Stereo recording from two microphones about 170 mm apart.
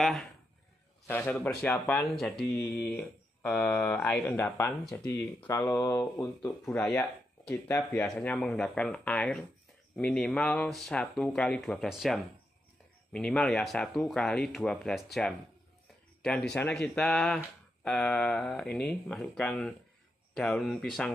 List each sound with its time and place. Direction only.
0.0 s speech: centre (ahead or behind); by 6.8 s 20° left (ahead or behind)
6.8 s speech: 5° left (ahead or behind)